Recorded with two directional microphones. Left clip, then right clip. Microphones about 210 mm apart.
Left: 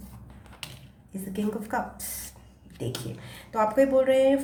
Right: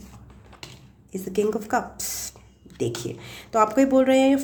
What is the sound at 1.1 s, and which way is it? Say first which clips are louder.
Speech: right 9 dB; 45° right (ahead or behind).